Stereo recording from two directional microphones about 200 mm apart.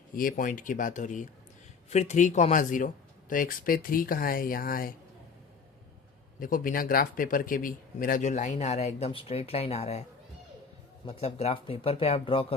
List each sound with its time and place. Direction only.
0.2 s speech: 45° left (ahead or behind)
6.4 s speech: 45° left (ahead or behind)
11.0 s speech: 30° left (ahead or behind)